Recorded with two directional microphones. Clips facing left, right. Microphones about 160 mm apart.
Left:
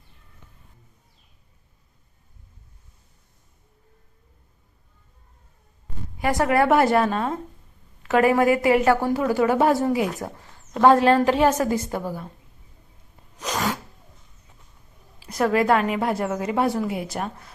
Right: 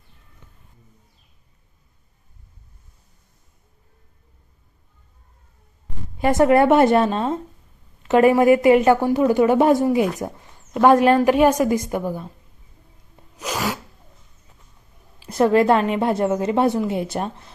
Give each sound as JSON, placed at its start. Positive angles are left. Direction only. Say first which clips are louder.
{"t": 6.1, "sound": "a woman's voice", "louder": "right 5 dB", "side_deg": -25}
{"t": 13.4, "sound": "sneeze", "louder": "right 1 dB", "side_deg": -10}
{"t": 15.3, "sound": "speech", "louder": "right 4 dB", "side_deg": -25}